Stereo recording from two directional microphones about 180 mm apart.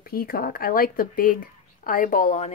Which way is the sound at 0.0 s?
55° left (ahead or behind).